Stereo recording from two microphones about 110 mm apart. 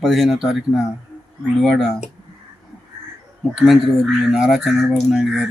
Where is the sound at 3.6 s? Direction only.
Centre (ahead or behind).